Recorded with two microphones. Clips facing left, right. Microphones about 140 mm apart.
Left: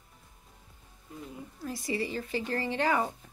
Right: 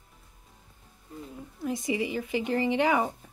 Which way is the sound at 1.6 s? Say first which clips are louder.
Right 4 dB; 20° right (ahead or behind).